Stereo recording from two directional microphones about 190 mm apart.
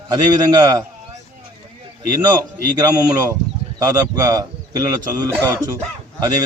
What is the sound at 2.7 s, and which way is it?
A man's voice, 20° right (ahead or behind).